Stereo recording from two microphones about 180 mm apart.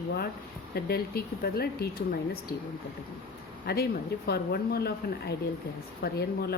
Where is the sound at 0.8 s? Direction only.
60° left (ahead or behind).